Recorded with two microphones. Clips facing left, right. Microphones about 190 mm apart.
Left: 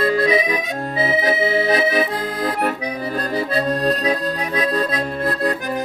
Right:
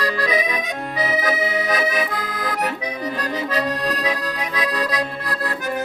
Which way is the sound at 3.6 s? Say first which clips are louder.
Left 5 dB; 30° left (ahead or behind).